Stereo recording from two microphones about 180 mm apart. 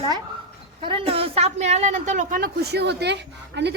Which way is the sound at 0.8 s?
30° right (ahead or behind).